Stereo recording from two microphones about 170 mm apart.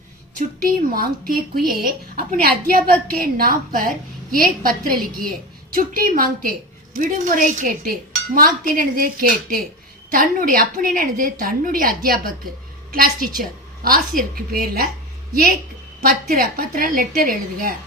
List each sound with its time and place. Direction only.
0.3 s a woman's voice: 55° right (ahead or behind)
16.0 s speech: 55° right (ahead or behind)